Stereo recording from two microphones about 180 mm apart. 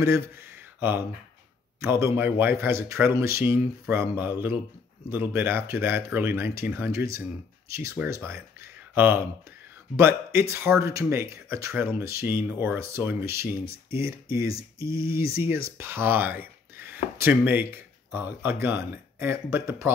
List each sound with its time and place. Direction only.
0.7 s a man's voice: 10° right (ahead or behind)